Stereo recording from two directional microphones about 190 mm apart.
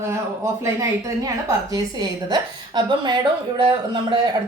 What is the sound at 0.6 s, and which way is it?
A woman's voice, 15° right (ahead or behind).